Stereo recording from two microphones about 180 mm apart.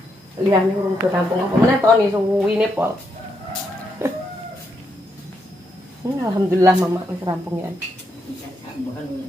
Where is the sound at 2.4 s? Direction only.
10° right (ahead or behind).